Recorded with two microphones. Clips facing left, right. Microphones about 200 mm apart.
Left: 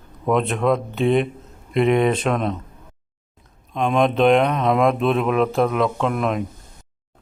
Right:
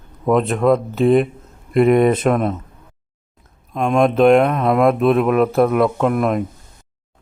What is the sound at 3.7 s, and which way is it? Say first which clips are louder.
Speech: right 3 dB; centre (ahead or behind).